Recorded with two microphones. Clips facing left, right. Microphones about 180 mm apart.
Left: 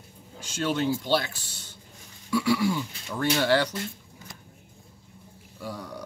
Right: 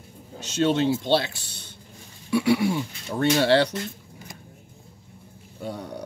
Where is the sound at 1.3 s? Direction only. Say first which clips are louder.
Right 2 dB; 65° right (ahead or behind).